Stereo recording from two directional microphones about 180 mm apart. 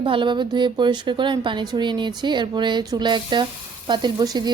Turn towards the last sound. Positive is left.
turn(degrees=-20)  # may be behind; listen again after turning